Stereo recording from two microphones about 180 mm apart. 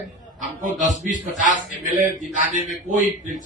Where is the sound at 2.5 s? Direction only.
40° left (ahead or behind).